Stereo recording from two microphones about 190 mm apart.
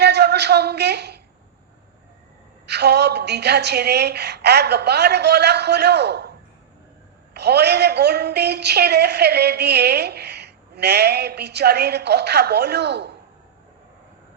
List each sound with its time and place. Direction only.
0.0 s speech: 60° right (ahead or behind)
2.6 s a woman's voice: 60° right (ahead or behind)
7.3 s a woman's voice: 60° right (ahead or behind)